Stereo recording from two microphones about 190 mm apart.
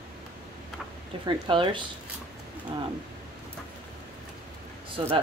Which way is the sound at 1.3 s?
25° right (ahead or behind).